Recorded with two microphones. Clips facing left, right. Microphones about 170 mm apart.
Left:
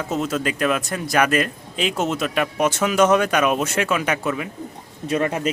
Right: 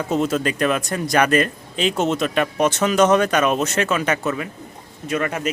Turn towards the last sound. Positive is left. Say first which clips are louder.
# left 2 dB
turn(degrees=30)  # may be behind; listen again after turning